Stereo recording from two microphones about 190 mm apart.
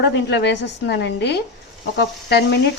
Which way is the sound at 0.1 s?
65° left (ahead or behind).